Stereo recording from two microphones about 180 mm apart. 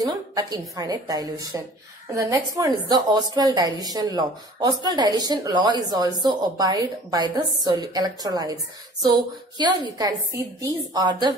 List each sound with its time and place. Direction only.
0.0 s a woman's voice: 20° right (ahead or behind)
9.6 s a woman's voice: 25° right (ahead or behind)